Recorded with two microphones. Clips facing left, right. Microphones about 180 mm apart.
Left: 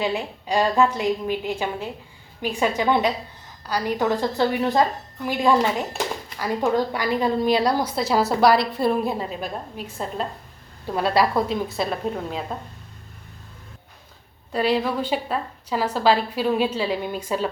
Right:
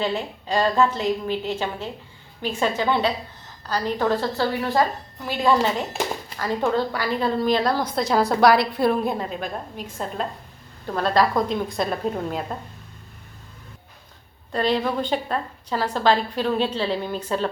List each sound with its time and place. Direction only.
0.0 s a woman's voice: 10° left (ahead or behind)
10.8 s a woman's voice: 10° left (ahead or behind)
14.5 s a woman's voice: 5° left (ahead or behind)